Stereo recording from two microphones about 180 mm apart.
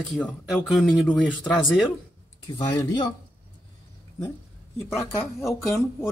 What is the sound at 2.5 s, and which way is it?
Speech, 25° left (ahead or behind).